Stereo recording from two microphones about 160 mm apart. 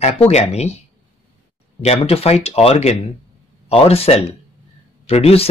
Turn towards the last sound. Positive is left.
turn(degrees=40)  # may be behind; listen again after turning